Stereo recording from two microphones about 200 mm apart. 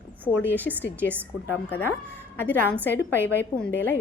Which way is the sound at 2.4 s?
10° left (ahead or behind).